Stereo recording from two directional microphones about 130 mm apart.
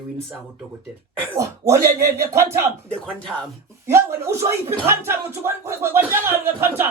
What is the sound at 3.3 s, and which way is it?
Speech, 5° right (ahead or behind).